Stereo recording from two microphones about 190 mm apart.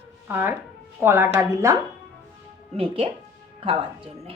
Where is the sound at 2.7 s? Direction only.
30° right (ahead or behind).